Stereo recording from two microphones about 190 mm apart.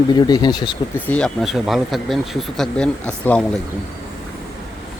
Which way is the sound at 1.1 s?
5° left (ahead or behind).